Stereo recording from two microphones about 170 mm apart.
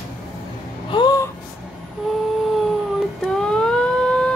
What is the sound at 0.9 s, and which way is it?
Gasp, 25° left (ahead or behind).